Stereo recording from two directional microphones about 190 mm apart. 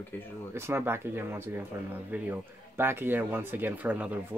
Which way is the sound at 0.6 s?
15° right (ahead or behind).